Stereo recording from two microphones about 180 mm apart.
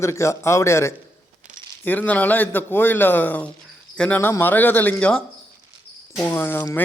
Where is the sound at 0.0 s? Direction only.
15° left (ahead or behind).